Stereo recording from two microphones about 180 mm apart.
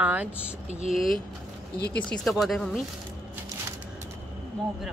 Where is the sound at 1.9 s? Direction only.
5° left (ahead or behind).